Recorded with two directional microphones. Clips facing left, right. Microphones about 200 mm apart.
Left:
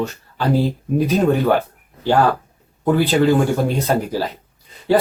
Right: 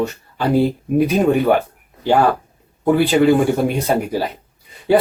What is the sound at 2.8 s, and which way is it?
Speech, 10° right (ahead or behind).